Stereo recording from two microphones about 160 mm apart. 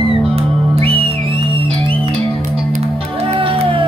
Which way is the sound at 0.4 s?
35° right (ahead or behind).